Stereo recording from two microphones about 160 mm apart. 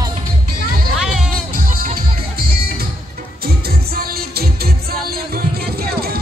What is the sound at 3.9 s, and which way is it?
Music, 70° right (ahead or behind).